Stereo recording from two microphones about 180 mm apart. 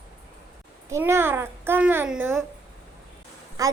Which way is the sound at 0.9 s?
15° right (ahead or behind).